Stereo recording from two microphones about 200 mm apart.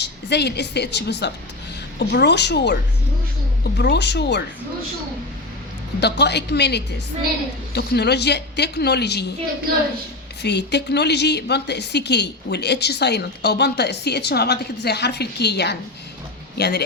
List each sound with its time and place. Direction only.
0.0 s a woman's voice: 60° left (ahead or behind)
6.0 s a woman's voice: 55° left (ahead or behind)
10.4 s a woman's voice: 60° left (ahead or behind)